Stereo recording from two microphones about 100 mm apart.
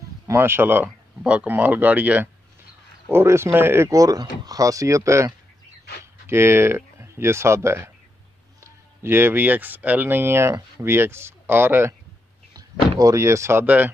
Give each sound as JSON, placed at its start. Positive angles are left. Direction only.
{"t": 0.3, "sound": "speech", "side_deg": -25}
{"t": 1.2, "sound": "speech", "side_deg": -10}
{"t": 9.0, "sound": "speech", "side_deg": -25}
{"t": 13.0, "sound": "speech", "side_deg": -30}